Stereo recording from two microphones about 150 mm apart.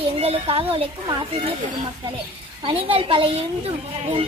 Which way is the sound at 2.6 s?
35° right (ahead or behind).